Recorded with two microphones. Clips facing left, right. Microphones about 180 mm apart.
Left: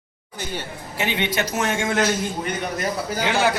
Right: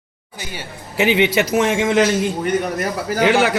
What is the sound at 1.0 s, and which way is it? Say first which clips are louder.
A man's voice: right 8 dB; 90° right.